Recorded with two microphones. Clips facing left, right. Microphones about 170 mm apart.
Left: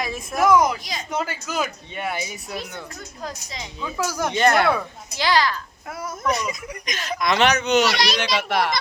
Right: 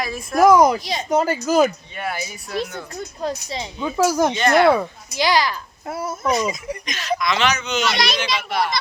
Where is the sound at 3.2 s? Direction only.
30° right (ahead or behind).